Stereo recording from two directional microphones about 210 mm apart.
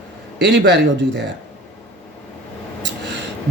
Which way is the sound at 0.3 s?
55° right (ahead or behind).